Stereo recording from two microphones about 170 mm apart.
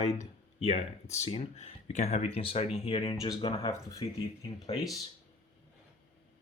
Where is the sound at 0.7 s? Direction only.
40° left (ahead or behind).